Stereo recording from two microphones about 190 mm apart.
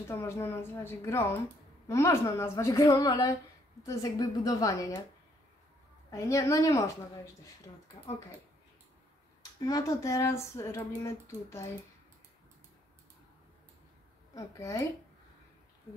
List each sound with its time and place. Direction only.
0.1 s speech: 15° left (ahead or behind)
6.0 s speech: 15° left (ahead or behind)
9.4 s speech: 20° left (ahead or behind)
14.3 s speech: 15° left (ahead or behind)